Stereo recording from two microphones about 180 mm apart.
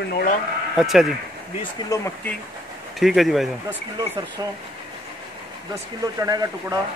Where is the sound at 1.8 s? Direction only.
15° left (ahead or behind).